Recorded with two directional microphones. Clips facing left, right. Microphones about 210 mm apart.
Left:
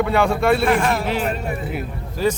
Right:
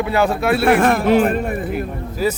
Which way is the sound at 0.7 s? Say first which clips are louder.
Right 6 dB; 55° right (ahead or behind).